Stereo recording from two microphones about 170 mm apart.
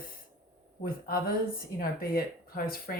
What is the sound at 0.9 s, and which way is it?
Speech, 60° left (ahead or behind).